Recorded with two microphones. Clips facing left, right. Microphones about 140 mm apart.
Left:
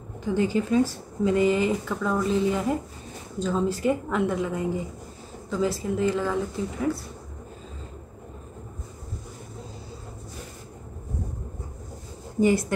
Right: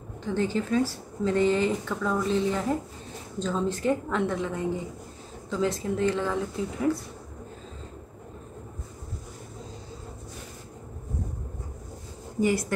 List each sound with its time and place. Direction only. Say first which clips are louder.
0.2 s speech: left 3 dB; 10° left (ahead or behind)
12.4 s speech: left 4 dB; 25° left (ahead or behind)